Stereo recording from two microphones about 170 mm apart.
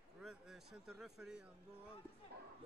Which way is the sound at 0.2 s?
Centre (ahead or behind).